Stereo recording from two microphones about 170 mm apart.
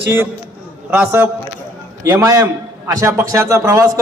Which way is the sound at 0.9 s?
10° right (ahead or behind).